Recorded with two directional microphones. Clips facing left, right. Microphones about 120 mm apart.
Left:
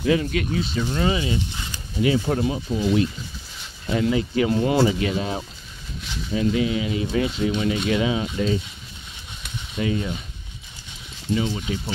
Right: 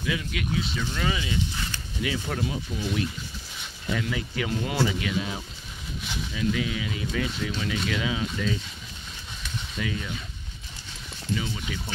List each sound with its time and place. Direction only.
0.0 s speech: 40° left (ahead or behind)
3.9 s speech: 30° left (ahead or behind)
9.8 s speech: 35° left (ahead or behind)
11.3 s speech: 30° left (ahead or behind)